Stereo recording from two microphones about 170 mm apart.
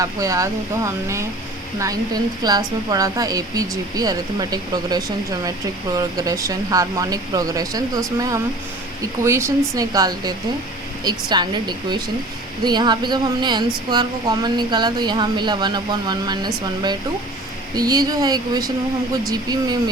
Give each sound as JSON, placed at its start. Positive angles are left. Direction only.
{"t": 0.0, "sound": "speech", "side_deg": -20}
{"t": 17.7, "sound": "speech", "side_deg": -20}